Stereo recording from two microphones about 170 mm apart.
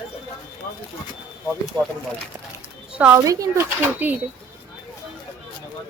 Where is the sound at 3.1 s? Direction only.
20° right (ahead or behind).